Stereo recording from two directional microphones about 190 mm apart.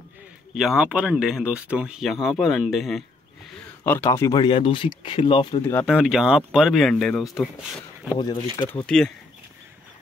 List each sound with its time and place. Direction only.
0.6 s speech: centre (ahead or behind)
3.8 s speech: 10° left (ahead or behind)
5.9 s speech: 5° right (ahead or behind)